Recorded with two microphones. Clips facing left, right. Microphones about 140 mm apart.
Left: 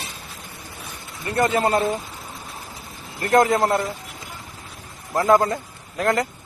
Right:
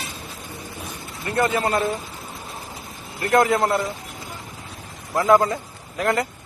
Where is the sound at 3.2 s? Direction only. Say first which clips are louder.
Left 1 dB; 35° left (ahead or behind).